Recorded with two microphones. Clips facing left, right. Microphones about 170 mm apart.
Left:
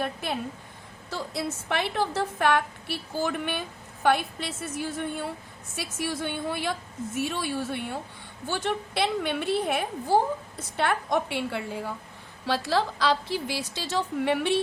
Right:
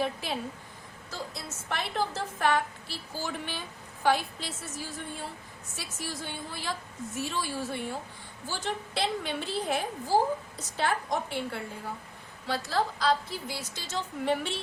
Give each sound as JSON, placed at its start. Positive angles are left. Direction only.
{"t": 0.0, "sound": "a woman's voice", "side_deg": 55}
{"t": 1.1, "sound": "a woman's voice", "side_deg": 65}